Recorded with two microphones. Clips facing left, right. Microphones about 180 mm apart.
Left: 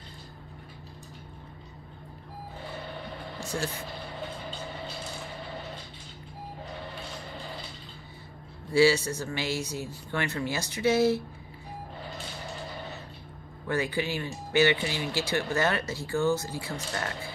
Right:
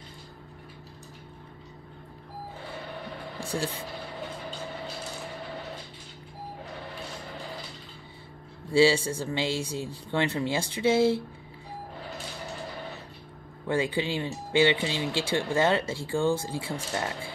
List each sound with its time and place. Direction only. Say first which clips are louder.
3.3 s a sound: right 2 dB; 30° right (ahead or behind)
8.7 s speech: right 1 dB; 25° right (ahead or behind)
13.7 s speech: right 2 dB; 25° right (ahead or behind)